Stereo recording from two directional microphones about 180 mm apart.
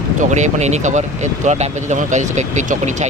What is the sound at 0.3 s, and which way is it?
Speech, 40° right (ahead or behind).